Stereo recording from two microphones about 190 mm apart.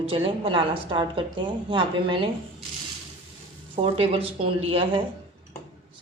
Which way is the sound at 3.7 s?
30° right (ahead or behind).